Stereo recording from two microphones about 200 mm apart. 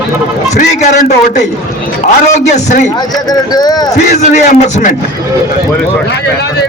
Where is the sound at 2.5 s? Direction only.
35° left (ahead or behind).